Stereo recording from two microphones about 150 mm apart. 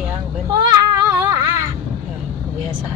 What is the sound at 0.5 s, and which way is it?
Female singing, 20° right (ahead or behind).